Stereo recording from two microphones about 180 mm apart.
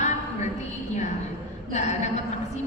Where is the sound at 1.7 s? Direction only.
40° left (ahead or behind).